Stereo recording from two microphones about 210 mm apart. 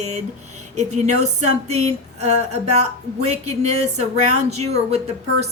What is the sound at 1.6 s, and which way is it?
Speech, 30° right (ahead or behind).